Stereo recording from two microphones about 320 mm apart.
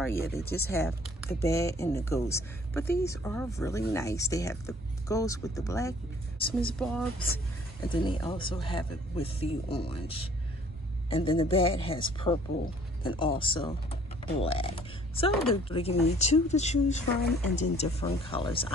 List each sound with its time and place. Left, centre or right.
0.2 s speech: left
0.7 s speech: centre
7.9 s speech: centre